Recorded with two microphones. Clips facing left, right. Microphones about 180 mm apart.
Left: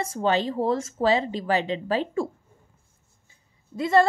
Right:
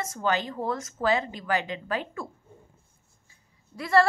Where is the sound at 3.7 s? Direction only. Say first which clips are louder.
Left 2 dB; 25° left (ahead or behind).